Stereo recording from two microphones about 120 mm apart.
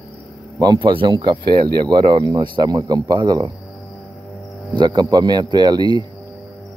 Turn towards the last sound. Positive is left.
turn(degrees=-35)  # may be behind; listen again after turning